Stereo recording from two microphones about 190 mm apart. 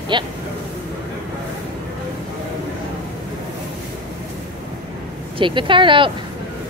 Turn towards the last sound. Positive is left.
turn(degrees=-25)  # may be behind; listen again after turning